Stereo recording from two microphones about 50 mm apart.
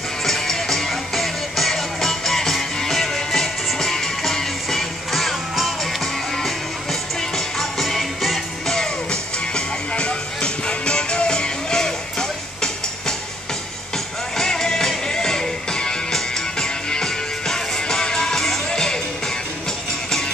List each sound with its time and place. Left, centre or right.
0.2 s music: centre
8.7 s music: centre